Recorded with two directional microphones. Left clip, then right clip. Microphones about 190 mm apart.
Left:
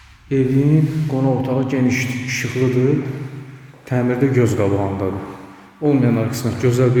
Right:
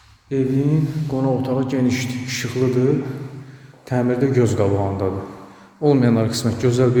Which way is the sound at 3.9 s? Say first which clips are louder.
Left 1 dB; centre (ahead or behind).